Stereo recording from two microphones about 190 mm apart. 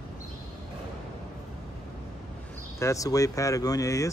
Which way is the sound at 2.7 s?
15° left (ahead or behind).